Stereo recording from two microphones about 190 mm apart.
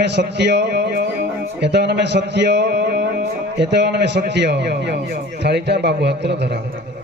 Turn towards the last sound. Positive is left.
turn(degrees=-60)  # may be behind; listen again after turning